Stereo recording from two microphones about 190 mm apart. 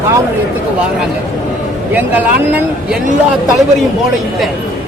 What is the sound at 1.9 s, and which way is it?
Speech, 10° right (ahead or behind).